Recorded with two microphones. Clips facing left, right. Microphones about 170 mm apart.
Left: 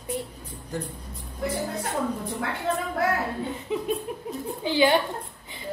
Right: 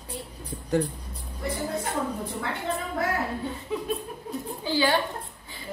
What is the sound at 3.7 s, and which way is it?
A woman's voice, 20° left (ahead or behind).